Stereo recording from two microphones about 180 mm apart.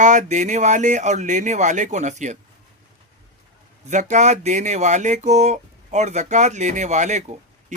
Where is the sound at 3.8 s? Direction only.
40° right (ahead or behind).